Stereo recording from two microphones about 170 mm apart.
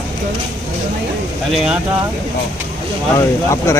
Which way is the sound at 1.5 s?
5° right (ahead or behind).